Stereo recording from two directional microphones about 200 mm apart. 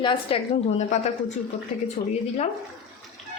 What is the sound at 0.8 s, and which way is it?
Speech, 35° left (ahead or behind).